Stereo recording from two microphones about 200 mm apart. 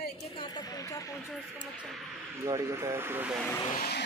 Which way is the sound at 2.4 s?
15° right (ahead or behind).